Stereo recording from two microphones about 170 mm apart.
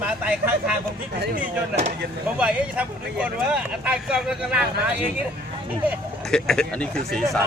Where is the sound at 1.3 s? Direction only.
45° right (ahead or behind).